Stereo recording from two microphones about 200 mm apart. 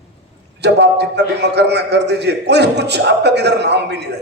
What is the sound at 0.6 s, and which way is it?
A man's voice, 60° right (ahead or behind).